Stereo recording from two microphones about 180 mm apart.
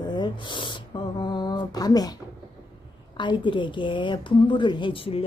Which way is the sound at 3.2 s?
25° left (ahead or behind).